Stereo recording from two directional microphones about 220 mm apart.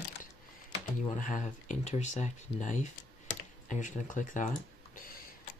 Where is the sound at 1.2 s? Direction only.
35° left (ahead or behind).